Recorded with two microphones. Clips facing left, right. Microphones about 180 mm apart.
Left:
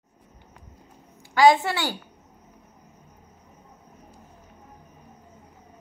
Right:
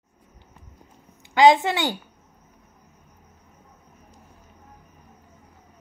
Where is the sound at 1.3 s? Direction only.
20° right (ahead or behind).